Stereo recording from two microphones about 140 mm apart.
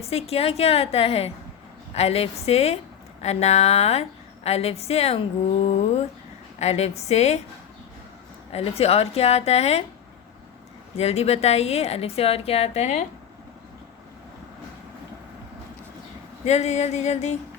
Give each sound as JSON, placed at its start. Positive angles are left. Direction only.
{"t": 0.0, "sound": "a woman's voice", "side_deg": 45}
{"t": 8.5, "sound": "a woman's voice", "side_deg": 45}
{"t": 10.9, "sound": "a woman's voice", "side_deg": 50}
{"t": 16.4, "sound": "a woman's voice", "side_deg": 50}